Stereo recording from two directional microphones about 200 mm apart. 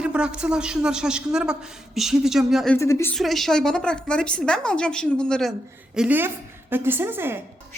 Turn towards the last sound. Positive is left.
turn(degrees=-10)  # may be behind; listen again after turning